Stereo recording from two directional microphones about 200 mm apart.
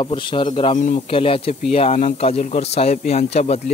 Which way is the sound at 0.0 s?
25° left (ahead or behind).